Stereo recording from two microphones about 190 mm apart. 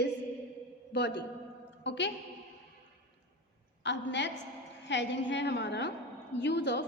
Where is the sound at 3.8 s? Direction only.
70° left (ahead or behind).